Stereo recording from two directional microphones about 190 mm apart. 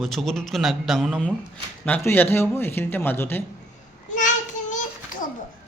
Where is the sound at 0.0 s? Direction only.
Centre (ahead or behind).